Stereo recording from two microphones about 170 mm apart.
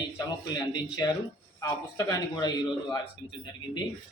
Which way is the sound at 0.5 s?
25° left (ahead or behind).